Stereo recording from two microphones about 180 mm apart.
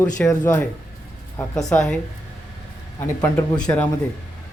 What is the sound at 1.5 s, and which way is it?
Speech, 5° left (ahead or behind).